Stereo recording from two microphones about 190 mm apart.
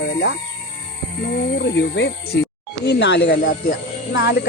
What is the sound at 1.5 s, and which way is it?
Speech, 65° left (ahead or behind).